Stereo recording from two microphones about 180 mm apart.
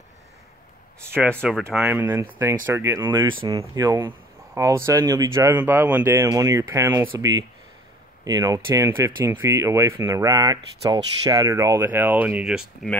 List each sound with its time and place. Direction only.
1.2 s speech: 10° right (ahead or behind)
1.5 s speech: centre (ahead or behind)